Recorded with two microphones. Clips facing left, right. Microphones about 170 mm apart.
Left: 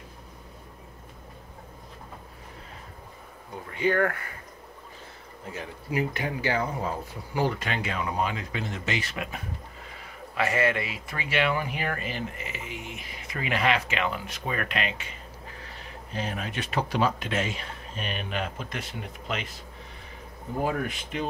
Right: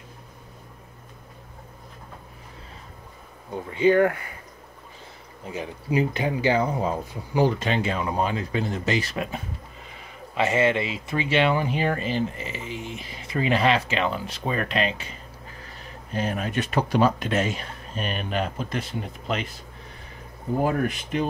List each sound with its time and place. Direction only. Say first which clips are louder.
3.7 s speech: right 6 dB; 20° right (ahead or behind)
5.5 s speech: right 6 dB; 20° right (ahead or behind); by 9.4 s 35° right (ahead or behind)
10.3 s speech: right 4 dB; 25° right (ahead or behind)
16.1 s speech: right 5 dB; 50° right (ahead or behind)